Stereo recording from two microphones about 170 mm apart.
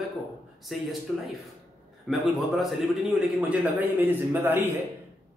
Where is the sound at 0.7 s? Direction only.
Centre (ahead or behind).